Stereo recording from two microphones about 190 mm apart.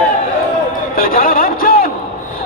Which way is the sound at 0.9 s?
50° left (ahead or behind).